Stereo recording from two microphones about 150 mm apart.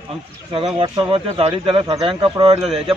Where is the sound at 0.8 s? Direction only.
35° right (ahead or behind).